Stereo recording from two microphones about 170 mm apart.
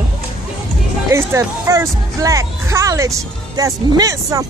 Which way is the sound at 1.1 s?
15° right (ahead or behind).